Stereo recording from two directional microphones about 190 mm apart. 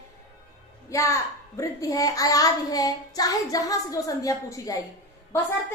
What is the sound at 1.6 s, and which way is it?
Child singing, 20° left (ahead or behind).